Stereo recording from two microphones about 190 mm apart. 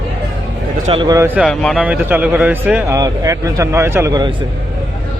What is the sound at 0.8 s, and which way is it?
Speech, 25° right (ahead or behind).